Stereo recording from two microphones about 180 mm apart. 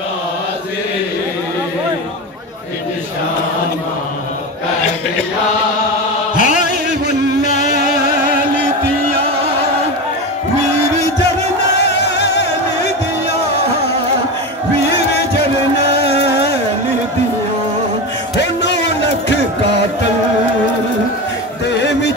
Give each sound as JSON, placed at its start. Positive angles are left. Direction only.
{"t": 6.3, "sound": "chant", "side_deg": 45}
{"t": 11.7, "sound": "music", "side_deg": 70}
{"t": 18.3, "sound": "music", "side_deg": 70}
{"t": 21.6, "sound": "a sound", "side_deg": 75}